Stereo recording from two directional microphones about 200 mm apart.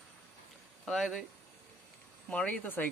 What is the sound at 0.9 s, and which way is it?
Speech, centre (ahead or behind).